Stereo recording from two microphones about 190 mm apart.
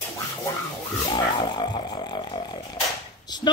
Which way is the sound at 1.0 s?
25° left (ahead or behind).